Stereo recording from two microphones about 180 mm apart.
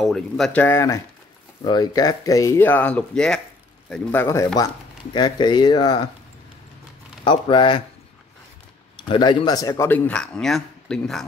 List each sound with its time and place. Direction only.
0.0 s speech: centre (ahead or behind)
5.1 s speech: 25° left (ahead or behind)
7.2 s speech: 30° left (ahead or behind)
8.9 s speech: 25° left (ahead or behind); by 11.2 s centre (ahead or behind)